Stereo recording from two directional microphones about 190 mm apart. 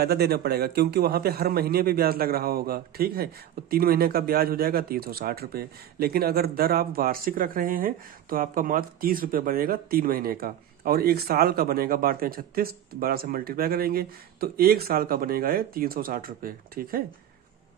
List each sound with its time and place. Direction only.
0.0 s speech: 55° right (ahead or behind)